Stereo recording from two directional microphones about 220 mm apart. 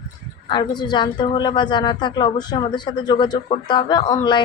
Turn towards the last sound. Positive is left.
turn(degrees=20)  # may be behind; listen again after turning